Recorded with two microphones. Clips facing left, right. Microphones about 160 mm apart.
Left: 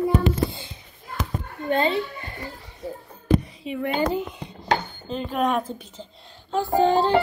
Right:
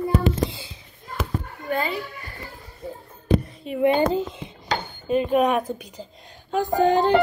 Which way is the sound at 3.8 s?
25° right (ahead or behind).